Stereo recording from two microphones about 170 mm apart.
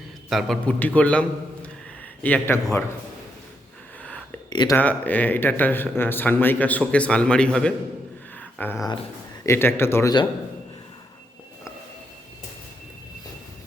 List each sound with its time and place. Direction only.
0.3 s speech: centre (ahead or behind)
4.0 s a sound: 5° left (ahead or behind)
4.4 s speech: 25° left (ahead or behind)
4.8 s speech: 10° left (ahead or behind)
8.4 s a sound: 10° left (ahead or behind)
9.5 s speech: 15° left (ahead or behind)